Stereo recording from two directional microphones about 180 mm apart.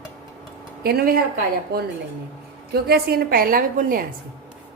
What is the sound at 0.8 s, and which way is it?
Speech, 60° right (ahead or behind).